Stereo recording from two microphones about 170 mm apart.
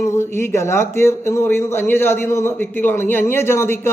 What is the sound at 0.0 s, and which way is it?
Speech, 15° left (ahead or behind).